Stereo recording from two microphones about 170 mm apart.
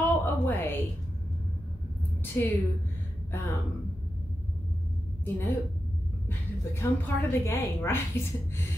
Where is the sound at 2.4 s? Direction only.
15° left (ahead or behind).